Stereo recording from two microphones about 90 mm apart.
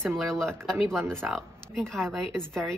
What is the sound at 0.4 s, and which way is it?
A woman's voice, 5° left (ahead or behind).